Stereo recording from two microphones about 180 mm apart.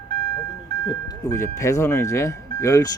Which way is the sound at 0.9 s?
20° left (ahead or behind).